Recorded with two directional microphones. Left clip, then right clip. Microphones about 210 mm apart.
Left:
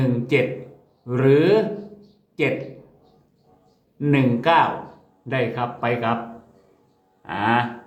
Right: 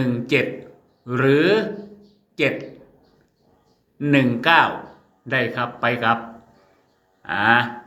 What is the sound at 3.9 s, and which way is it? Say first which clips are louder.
Speech: right 2 dB; 5° left (ahead or behind).